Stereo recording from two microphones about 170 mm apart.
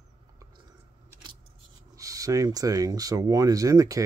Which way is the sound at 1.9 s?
20° right (ahead or behind).